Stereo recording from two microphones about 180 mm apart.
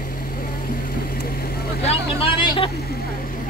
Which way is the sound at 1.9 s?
30° left (ahead or behind).